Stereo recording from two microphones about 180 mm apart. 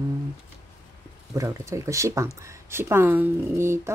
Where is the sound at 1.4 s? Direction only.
15° right (ahead or behind).